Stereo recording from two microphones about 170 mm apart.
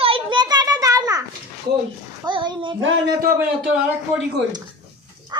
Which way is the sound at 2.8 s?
60° right (ahead or behind).